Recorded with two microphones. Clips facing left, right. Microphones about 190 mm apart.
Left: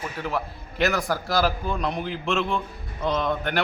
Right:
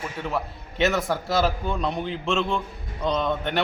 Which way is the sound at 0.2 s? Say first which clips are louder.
Even; centre (ahead or behind).